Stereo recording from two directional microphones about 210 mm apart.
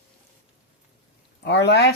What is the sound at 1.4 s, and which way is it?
Speech, 55° left (ahead or behind).